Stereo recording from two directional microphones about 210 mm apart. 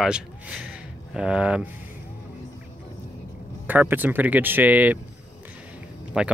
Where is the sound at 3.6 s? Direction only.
10° right (ahead or behind).